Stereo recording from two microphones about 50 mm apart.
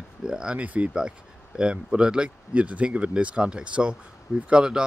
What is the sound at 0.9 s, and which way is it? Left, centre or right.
Speech, centre.